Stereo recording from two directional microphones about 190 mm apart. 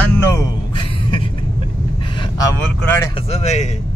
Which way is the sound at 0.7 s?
25° left (ahead or behind).